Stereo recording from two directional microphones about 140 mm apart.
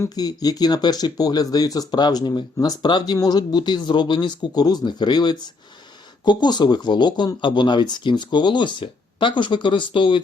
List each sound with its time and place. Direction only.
0.0 s speech: 25° left (ahead or behind)